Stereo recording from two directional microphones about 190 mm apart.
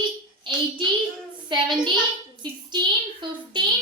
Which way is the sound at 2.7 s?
25° right (ahead or behind).